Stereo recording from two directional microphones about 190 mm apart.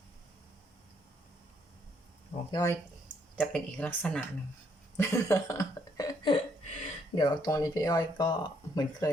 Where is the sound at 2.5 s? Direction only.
20° left (ahead or behind).